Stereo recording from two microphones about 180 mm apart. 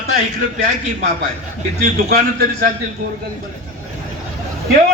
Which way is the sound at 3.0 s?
50° right (ahead or behind).